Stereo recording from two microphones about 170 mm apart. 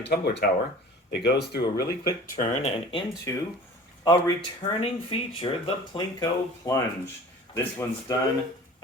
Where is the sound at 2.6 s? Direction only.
30° left (ahead or behind).